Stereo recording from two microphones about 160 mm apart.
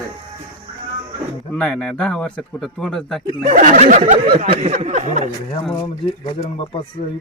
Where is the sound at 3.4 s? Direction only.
50° right (ahead or behind).